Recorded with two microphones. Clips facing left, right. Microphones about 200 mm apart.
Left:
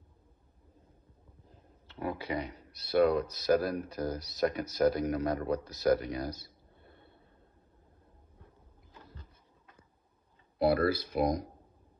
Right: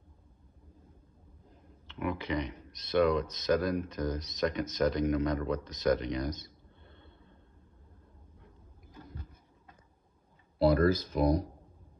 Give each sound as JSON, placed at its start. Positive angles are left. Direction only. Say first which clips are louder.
{"t": 2.0, "sound": "speech", "louder": "right 2 dB", "side_deg": 30}
{"t": 10.6, "sound": "speech", "louder": "right 2 dB", "side_deg": 10}